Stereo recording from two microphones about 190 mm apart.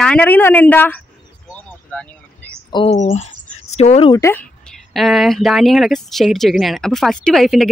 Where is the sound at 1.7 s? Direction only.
5° left (ahead or behind).